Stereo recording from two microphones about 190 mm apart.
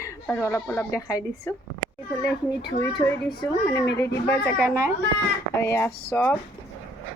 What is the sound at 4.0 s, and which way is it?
A woman's voice, 10° left (ahead or behind).